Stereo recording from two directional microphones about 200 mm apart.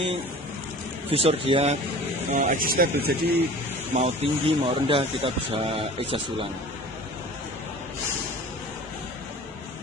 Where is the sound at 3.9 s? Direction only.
30° right (ahead or behind).